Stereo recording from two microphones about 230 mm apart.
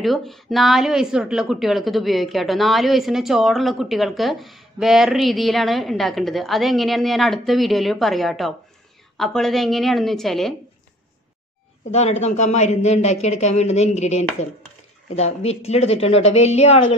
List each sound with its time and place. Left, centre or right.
0.0 s a woman's voice: centre
11.9 s speech: left